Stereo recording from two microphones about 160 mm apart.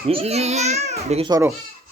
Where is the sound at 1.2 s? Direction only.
20° right (ahead or behind).